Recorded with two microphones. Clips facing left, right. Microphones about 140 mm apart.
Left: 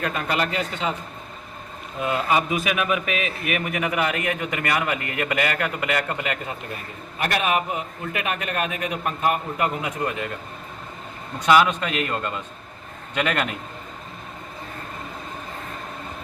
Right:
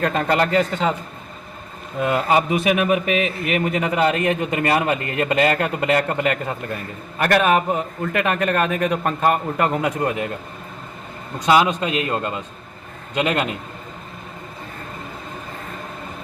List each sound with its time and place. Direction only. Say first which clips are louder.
0.0 s speech: right 6 dB; 40° right (ahead or behind)
2.1 s speech: right 3 dB; 40° right (ahead or behind)
11.3 s speech: right 1 dB; 30° right (ahead or behind)
12.1 s a man's voice: right 3 dB; 15° right (ahead or behind)